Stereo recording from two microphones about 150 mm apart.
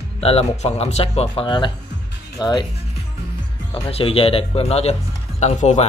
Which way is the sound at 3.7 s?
40° left (ahead or behind).